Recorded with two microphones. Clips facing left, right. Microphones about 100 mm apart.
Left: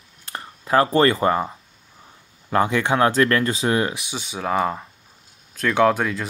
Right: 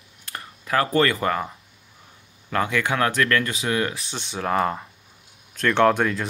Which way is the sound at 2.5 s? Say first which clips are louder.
Left 4 dB; 30° left (ahead or behind).